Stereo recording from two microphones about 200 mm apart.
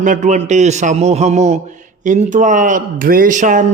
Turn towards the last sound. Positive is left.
turn(degrees=-40)  # may be behind; listen again after turning